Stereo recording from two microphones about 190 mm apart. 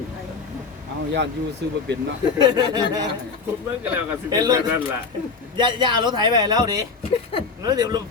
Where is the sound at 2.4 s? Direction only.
20° right (ahead or behind).